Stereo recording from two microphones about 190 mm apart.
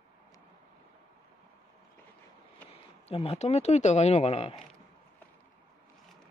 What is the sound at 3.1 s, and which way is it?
Speech, 30° left (ahead or behind).